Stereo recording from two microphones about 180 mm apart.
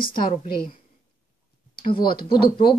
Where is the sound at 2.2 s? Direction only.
30° left (ahead or behind).